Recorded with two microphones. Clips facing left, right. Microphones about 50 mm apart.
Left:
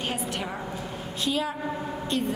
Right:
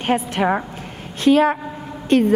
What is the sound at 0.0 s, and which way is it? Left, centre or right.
A woman's voice, right.